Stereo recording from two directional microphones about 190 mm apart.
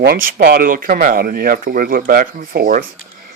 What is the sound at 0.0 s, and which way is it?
Speech, 55° right (ahead or behind).